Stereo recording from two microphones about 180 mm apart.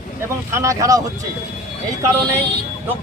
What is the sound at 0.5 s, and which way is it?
Speech, 15° right (ahead or behind).